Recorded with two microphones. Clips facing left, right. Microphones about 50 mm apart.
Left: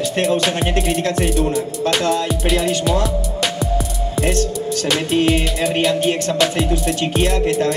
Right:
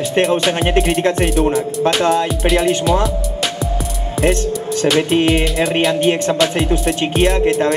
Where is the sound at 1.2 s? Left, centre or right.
Centre.